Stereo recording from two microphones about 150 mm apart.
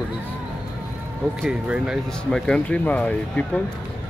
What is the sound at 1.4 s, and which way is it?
Speech, 5° right (ahead or behind).